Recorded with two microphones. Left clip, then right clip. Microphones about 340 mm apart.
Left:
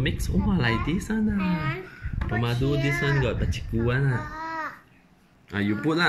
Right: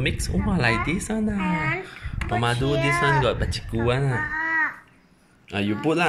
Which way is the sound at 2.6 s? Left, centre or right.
Right.